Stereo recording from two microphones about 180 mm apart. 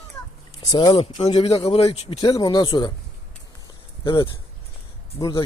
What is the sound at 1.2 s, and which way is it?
Speech, 35° left (ahead or behind).